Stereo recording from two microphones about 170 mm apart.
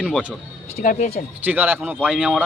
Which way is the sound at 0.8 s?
50° left (ahead or behind).